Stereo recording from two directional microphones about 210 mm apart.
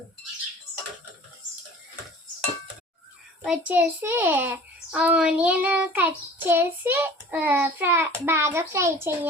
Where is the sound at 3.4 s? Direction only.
5° right (ahead or behind).